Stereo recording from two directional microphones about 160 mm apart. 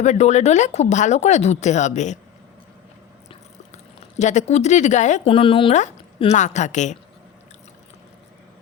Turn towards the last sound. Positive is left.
turn(degrees=50)  # may be behind; listen again after turning